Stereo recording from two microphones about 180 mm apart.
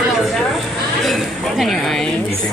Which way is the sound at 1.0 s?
Centre (ahead or behind).